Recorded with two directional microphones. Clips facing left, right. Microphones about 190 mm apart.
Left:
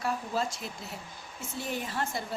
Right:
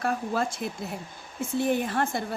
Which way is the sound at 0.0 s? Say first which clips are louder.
Right 4 dB; 55° right (ahead or behind).